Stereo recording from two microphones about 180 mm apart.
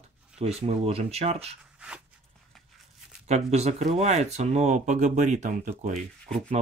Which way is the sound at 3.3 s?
35° right (ahead or behind).